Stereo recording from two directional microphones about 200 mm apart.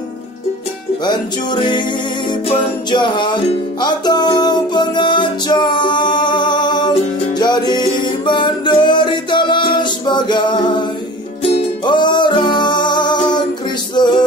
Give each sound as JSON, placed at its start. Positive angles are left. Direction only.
{"t": 1.0, "sound": "music", "side_deg": 20}